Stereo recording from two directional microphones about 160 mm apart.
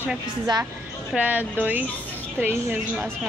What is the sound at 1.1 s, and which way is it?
A woman's voice, 10° right (ahead or behind).